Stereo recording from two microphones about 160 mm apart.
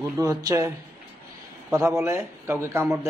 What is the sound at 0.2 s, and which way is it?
Speech, 20° right (ahead or behind).